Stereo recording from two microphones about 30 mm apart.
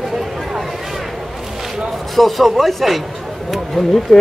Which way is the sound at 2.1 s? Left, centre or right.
Centre.